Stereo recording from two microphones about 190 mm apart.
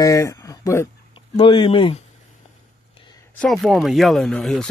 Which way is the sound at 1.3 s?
30° left (ahead or behind).